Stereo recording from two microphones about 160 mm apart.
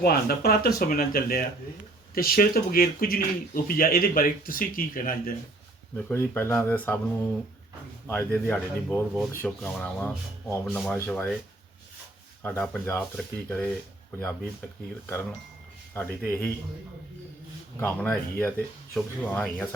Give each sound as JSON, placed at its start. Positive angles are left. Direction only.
{"t": 0.0, "sound": "speech", "side_deg": 75}
{"t": 6.1, "sound": "speech", "side_deg": 15}
{"t": 8.0, "sound": "speech", "side_deg": 15}
{"t": 12.4, "sound": "speech", "side_deg": 10}
{"t": 16.0, "sound": "speech", "side_deg": 10}
{"t": 17.7, "sound": "speech", "side_deg": 10}